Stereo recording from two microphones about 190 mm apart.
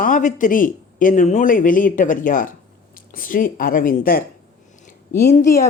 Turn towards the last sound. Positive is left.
turn(degrees=50)  # may be behind; listen again after turning